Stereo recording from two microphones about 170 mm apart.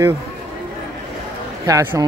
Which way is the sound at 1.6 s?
20° right (ahead or behind).